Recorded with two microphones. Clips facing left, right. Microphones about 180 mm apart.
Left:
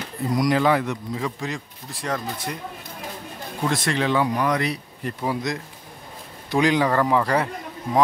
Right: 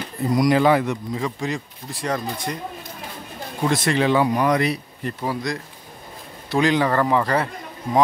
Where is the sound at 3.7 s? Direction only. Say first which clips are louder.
Right 4 dB; 5° right (ahead or behind).